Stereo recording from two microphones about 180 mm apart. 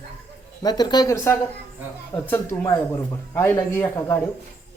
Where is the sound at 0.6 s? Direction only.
20° left (ahead or behind).